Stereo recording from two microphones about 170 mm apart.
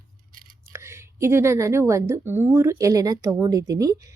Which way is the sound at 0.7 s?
15° right (ahead or behind).